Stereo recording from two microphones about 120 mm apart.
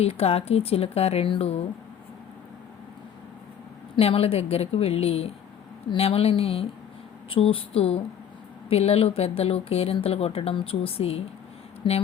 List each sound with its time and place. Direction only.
0.0 s speech: 55° left (ahead or behind)
3.9 s speech: 50° left (ahead or behind)
11.8 s speech: 40° left (ahead or behind)